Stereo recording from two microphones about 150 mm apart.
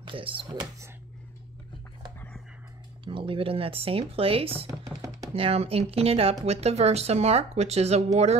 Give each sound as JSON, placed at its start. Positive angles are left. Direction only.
{"t": 0.0, "sound": "speech", "side_deg": -35}
{"t": 3.1, "sound": "speech", "side_deg": -35}